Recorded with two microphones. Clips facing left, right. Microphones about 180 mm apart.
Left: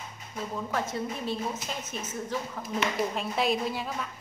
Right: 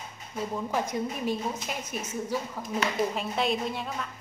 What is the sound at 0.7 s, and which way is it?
A woman's voice, 15° right (ahead or behind).